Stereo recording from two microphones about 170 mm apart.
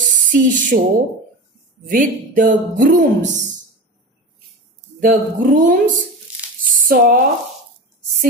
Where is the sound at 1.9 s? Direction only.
55° right (ahead or behind).